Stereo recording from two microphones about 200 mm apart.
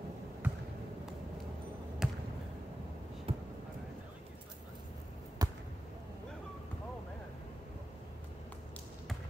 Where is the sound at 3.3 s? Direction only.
30° right (ahead or behind).